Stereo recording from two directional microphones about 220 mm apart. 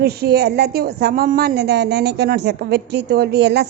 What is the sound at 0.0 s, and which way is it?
A woman's voice, 45° right (ahead or behind).